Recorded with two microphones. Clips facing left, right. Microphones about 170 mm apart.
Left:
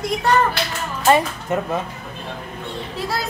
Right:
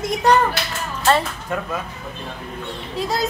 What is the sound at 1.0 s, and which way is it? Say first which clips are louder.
Speech: left 2 dB; 15° left (ahead or behind).